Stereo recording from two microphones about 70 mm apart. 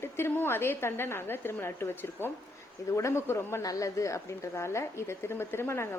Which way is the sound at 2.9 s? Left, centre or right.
Left.